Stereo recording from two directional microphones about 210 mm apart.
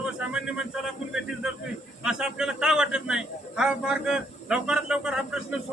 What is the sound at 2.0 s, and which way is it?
A man's voice, 5° right (ahead or behind).